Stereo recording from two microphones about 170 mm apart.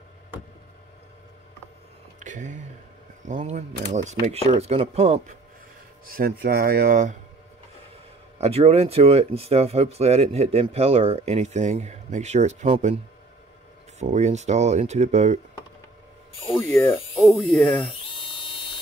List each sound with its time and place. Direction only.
2.1 s a sound: 45° right (ahead or behind)
3.2 s speech: 45° right (ahead or behind)
6.0 s speech: 55° right (ahead or behind)
8.4 s speech: 35° right (ahead or behind)
17.2 s speech: centre (ahead or behind)
18.0 s electric toothbrush: 30° left (ahead or behind)